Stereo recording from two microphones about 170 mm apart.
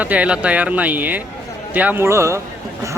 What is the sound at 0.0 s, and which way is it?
Speech, 10° right (ahead or behind).